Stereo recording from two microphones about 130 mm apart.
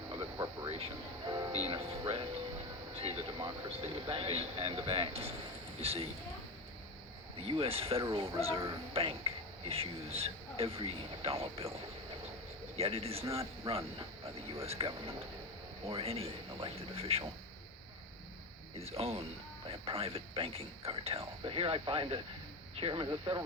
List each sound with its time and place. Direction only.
0.1 s a sound: 30° right (ahead or behind)
1.5 s music: 50° right (ahead or behind)
2.9 s speech: 50° right (ahead or behind)
7.3 s speech: 45° right (ahead or behind)
8.0 s speech: 40° right (ahead or behind)
12.7 s speech: 50° right (ahead or behind)
18.8 s speech: 50° right (ahead or behind)